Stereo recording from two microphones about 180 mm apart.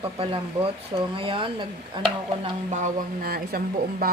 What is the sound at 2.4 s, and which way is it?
Speech, 40° right (ahead or behind).